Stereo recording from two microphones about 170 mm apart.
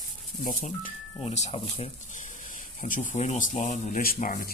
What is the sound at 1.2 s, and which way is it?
Speech, 40° left (ahead or behind).